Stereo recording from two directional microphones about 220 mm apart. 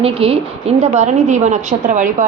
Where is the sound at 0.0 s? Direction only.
25° right (ahead or behind).